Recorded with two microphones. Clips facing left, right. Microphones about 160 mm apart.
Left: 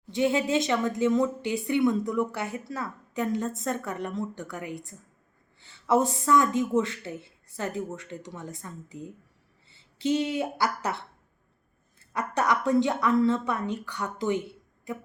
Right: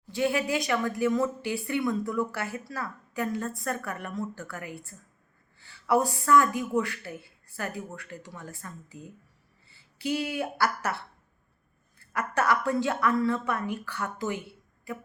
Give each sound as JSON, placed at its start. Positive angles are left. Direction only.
{"t": 0.1, "sound": "a woman's voice", "side_deg": 20}